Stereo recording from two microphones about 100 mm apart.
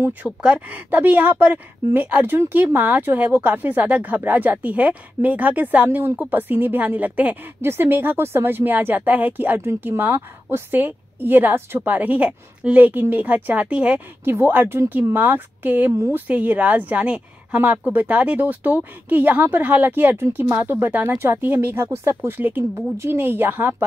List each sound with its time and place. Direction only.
0.0 s a woman's voice: 15° right (ahead or behind)